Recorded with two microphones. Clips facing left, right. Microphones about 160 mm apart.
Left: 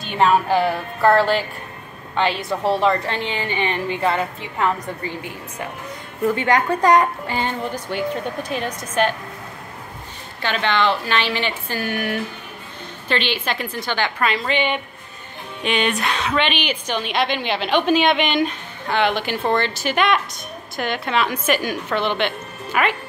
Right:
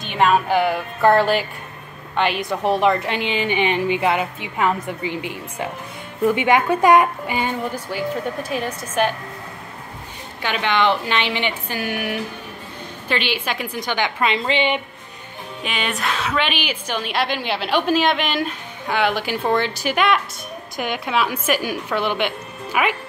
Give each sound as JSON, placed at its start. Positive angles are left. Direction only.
{"t": 0.0, "sound": "a woman's voice", "side_deg": -15}
{"t": 10.4, "sound": "a woman's voice", "side_deg": -10}
{"t": 15.6, "sound": "a woman's voice", "side_deg": -5}